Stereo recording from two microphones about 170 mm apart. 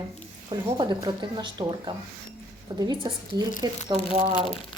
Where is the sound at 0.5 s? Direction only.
25° right (ahead or behind).